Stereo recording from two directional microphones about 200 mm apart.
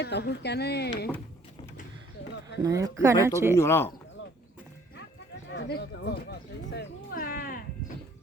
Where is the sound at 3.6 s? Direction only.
10° left (ahead or behind).